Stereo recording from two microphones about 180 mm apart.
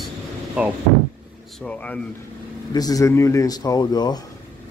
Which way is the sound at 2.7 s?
20° left (ahead or behind).